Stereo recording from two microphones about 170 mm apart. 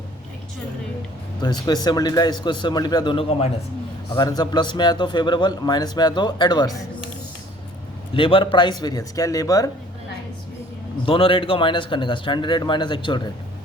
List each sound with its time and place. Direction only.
1.4 s a man's voice: 25° left (ahead or behind)
4.1 s a man's voice: 25° left (ahead or behind)
8.1 s a man's voice: 30° left (ahead or behind)
11.0 s a man's voice: 30° left (ahead or behind)